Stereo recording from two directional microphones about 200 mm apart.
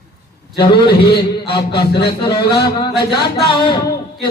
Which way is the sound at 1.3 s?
25° left (ahead or behind).